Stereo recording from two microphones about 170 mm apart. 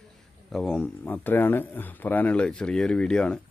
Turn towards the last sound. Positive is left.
turn(degrees=5)  # may be behind; listen again after turning